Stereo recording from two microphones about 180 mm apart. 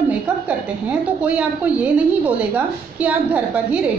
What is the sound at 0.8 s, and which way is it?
A woman's voice, 10° right (ahead or behind).